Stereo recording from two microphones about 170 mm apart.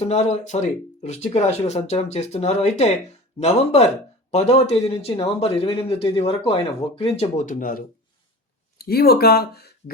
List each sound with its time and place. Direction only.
0.0 s speech: 40° left (ahead or behind); by 7.9 s 55° left (ahead or behind)
8.8 s speech: 65° left (ahead or behind)